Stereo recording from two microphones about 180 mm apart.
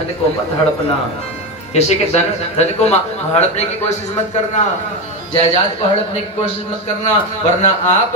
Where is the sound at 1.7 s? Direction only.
35° left (ahead or behind).